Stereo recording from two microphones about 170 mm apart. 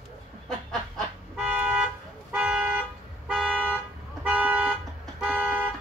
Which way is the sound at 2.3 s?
5° right (ahead or behind).